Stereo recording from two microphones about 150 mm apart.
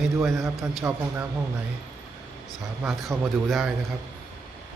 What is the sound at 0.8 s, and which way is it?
Speech, 15° right (ahead or behind).